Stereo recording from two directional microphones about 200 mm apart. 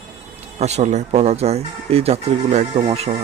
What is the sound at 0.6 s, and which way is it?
Speech, 35° right (ahead or behind).